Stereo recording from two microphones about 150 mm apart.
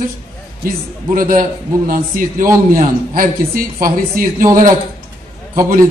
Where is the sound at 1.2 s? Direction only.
65° right (ahead or behind).